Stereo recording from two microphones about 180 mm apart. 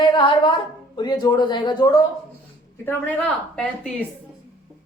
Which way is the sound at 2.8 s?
5° left (ahead or behind).